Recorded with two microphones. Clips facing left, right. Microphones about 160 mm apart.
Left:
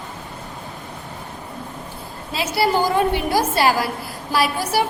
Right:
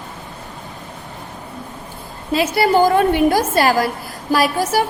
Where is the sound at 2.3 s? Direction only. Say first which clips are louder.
Right 5 dB; 50° right (ahead or behind).